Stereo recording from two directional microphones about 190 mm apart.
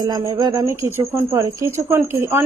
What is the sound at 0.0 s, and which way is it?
Speech, 20° right (ahead or behind).